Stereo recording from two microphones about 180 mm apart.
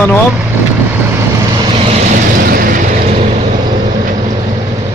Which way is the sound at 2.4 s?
55° right (ahead or behind).